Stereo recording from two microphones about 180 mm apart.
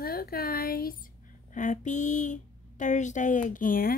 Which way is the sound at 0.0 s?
55° left (ahead or behind).